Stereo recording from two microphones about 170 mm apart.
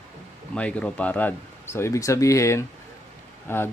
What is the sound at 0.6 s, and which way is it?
Speech, 5° left (ahead or behind).